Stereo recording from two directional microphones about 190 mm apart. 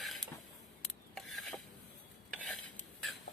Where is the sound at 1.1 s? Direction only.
Centre (ahead or behind).